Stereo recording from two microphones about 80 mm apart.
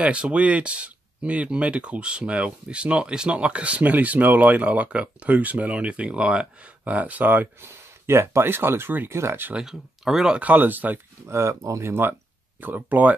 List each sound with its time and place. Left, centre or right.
0.0 s speech: centre
7.6 s speech: right
9.5 s speech: centre; by 11.0 s right
11.2 s speech: right
11.9 s speech: right